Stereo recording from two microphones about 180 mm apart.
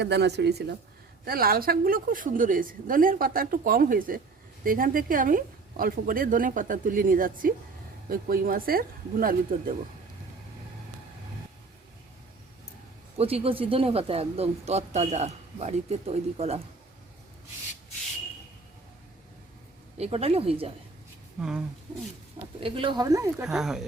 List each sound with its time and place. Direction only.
0.0 s speech: 70° right (ahead or behind)
1.2 s speech: 55° right (ahead or behind)
13.1 s speech: 35° right (ahead or behind)
20.0 s speech: 35° right (ahead or behind)
21.4 s speech: centre (ahead or behind)
22.6 s speech: 30° right (ahead or behind)
23.5 s speech: centre (ahead or behind)